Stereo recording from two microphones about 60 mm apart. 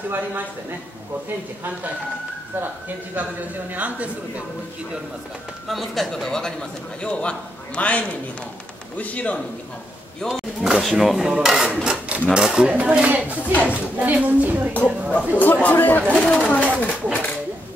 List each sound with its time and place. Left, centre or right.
0.1 s speech: right
3.7 s a woman's voice: right
5.7 s a man's voice: centre; by 9.4 s left
10.6 s a woman's voice: centre
13.4 s speech: left
13.9 s a woman's voice: right
14.7 s speech: left